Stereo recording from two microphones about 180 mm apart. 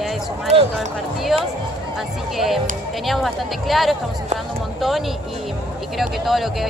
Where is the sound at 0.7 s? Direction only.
Centre (ahead or behind).